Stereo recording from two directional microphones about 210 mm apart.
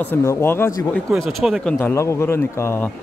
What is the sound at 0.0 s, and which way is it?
Speech, 10° left (ahead or behind).